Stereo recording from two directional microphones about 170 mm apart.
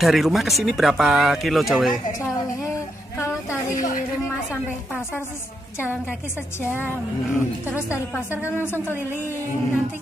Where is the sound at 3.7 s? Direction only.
55° left (ahead or behind).